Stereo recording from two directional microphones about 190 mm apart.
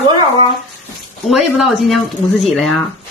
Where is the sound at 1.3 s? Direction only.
Centre (ahead or behind).